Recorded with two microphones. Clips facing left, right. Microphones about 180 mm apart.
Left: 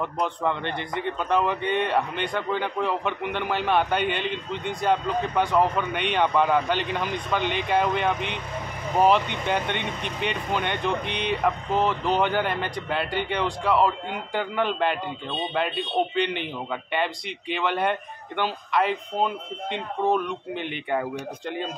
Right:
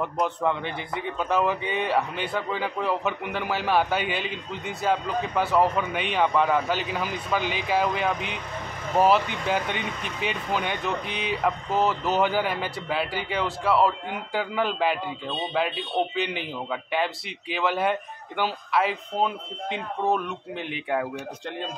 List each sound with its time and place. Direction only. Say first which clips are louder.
0.0 s speech: right 1 dB; 5° right (ahead or behind)